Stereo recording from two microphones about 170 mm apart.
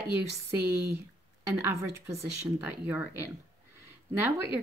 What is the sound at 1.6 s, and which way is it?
Speech, 15° right (ahead or behind).